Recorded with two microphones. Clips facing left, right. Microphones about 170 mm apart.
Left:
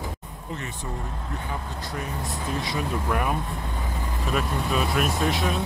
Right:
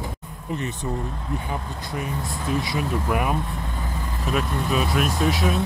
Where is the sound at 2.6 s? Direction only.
10° right (ahead or behind).